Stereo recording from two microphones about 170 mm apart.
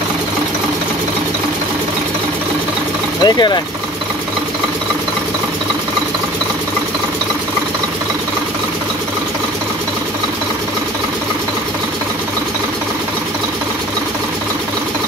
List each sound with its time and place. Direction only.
3.3 s speech: 25° left (ahead or behind)